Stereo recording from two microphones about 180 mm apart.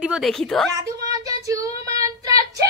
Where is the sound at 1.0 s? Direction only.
20° right (ahead or behind).